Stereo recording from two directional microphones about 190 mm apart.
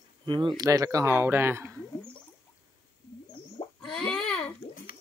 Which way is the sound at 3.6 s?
25° left (ahead or behind).